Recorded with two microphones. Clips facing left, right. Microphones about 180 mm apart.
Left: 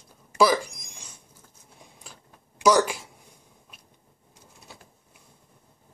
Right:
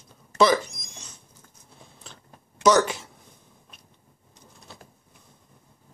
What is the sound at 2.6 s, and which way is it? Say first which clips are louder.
Speech: right 1 dB; 10° left (ahead or behind).